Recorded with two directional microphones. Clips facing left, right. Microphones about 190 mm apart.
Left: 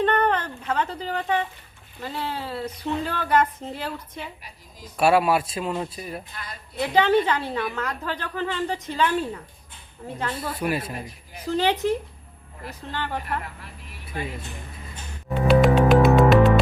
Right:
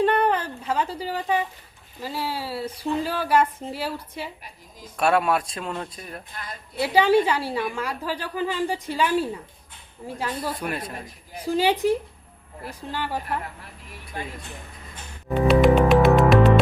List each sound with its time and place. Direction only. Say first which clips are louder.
0.0 s a sound: right 1 dB; 10° right (ahead or behind)
2.0 s a woman's voice: right 1 dB; 5° right (ahead or behind)
4.9 s speech: left 2 dB; 5° left (ahead or behind)
6.7 s a woman's voice: right 1 dB; 10° right (ahead or behind)
10.6 s speech: left 4 dB; 5° left (ahead or behind)
11.4 s a woman's voice: right 1 dB; 10° right (ahead or behind)
15.4 s music: even; centre (ahead or behind)